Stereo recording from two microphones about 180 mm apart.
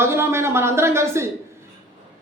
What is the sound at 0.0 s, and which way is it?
A man's voice, 15° right (ahead or behind).